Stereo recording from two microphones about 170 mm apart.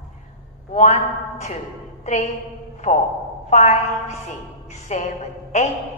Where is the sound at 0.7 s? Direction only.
45° left (ahead or behind).